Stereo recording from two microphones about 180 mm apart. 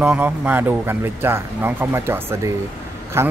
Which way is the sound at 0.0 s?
10° right (ahead or behind).